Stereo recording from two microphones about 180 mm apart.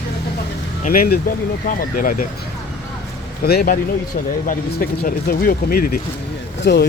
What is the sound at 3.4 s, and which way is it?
Speech, 60° left (ahead or behind).